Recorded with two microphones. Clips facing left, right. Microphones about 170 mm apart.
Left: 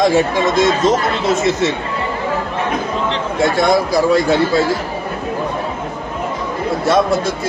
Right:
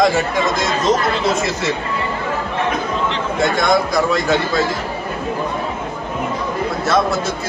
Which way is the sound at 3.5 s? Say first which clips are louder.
Left 2 dB; 30° left (ahead or behind).